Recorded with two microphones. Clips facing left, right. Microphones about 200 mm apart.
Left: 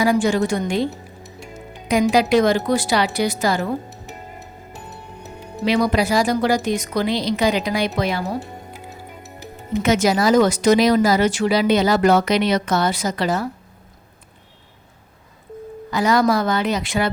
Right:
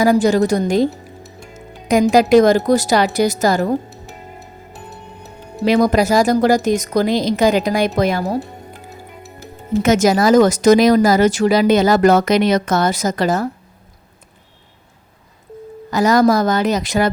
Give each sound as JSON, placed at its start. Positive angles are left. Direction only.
{"t": 0.0, "sound": "speech", "side_deg": -40}
{"t": 1.9, "sound": "speech", "side_deg": -45}
{"t": 5.6, "sound": "speech", "side_deg": -45}
{"t": 9.8, "sound": "speech", "side_deg": -45}
{"t": 15.9, "sound": "speech", "side_deg": -45}